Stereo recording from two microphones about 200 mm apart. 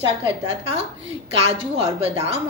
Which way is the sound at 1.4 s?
30° right (ahead or behind).